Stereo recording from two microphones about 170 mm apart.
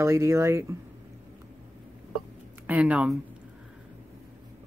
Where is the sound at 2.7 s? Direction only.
10° right (ahead or behind).